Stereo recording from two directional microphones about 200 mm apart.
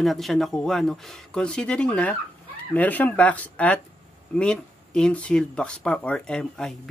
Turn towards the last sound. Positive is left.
turn(degrees=5)  # may be behind; listen again after turning